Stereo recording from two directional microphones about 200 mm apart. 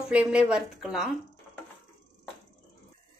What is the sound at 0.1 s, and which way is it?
Speech, 5° right (ahead or behind).